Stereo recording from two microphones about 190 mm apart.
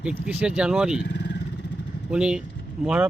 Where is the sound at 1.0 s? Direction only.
65° left (ahead or behind).